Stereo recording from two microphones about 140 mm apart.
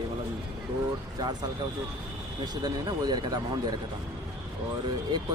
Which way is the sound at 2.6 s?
30° right (ahead or behind).